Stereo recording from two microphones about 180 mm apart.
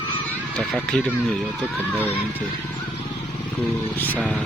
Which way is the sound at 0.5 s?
5° left (ahead or behind).